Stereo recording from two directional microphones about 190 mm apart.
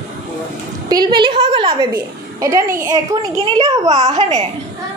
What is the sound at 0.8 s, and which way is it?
A woman's voice, 20° right (ahead or behind).